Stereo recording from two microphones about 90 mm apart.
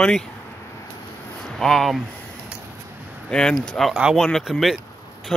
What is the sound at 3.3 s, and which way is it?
Speech, 10° left (ahead or behind).